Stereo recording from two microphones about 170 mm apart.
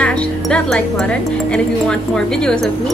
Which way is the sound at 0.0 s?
5° left (ahead or behind).